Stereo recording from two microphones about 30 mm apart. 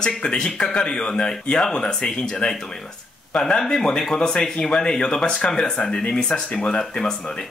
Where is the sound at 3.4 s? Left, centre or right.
Left.